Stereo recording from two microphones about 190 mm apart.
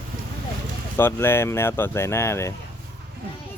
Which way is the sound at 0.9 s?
10° left (ahead or behind).